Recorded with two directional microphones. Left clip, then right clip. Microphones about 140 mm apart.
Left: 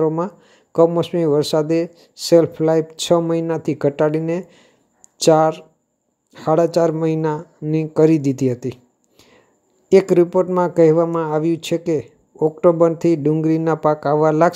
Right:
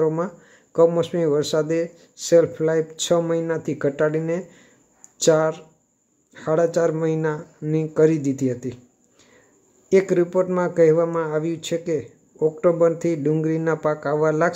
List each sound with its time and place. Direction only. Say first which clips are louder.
0.0 s speech: left 3 dB; 30° left (ahead or behind)
9.8 s speech: left 5 dB; 35° left (ahead or behind)